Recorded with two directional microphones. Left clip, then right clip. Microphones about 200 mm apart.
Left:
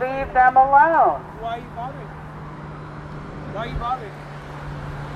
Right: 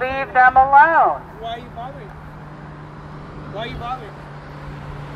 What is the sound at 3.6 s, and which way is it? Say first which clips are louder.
Speech: left 2 dB; 50° right (ahead or behind).